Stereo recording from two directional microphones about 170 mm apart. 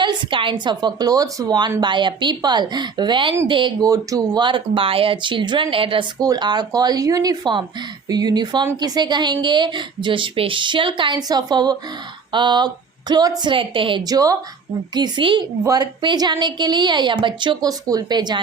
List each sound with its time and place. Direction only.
0.0 s speech: 30° right (ahead or behind)